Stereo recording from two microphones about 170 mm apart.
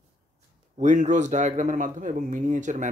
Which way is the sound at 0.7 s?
45° right (ahead or behind).